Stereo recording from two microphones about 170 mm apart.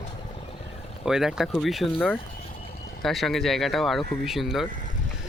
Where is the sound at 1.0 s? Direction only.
5° right (ahead or behind).